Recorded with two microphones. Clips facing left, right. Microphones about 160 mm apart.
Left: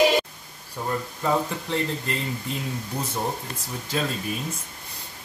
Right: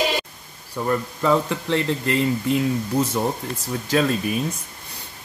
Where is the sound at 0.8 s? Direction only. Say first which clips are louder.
Right 5 dB; 90° right.